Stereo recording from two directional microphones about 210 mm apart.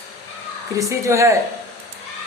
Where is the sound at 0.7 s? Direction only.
15° right (ahead or behind).